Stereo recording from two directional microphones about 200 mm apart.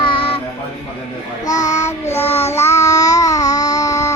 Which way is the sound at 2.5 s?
15° left (ahead or behind).